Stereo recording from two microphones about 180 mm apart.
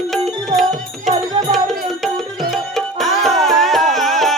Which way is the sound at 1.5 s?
Centre (ahead or behind).